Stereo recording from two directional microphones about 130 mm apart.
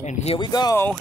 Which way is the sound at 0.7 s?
15° left (ahead or behind).